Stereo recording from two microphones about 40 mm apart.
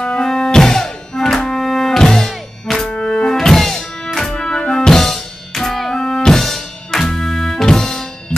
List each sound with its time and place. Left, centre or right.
0.0 s music: left
3.3 s music: centre